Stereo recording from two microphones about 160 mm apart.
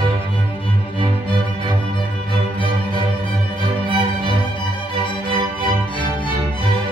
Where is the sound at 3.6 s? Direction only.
30° right (ahead or behind).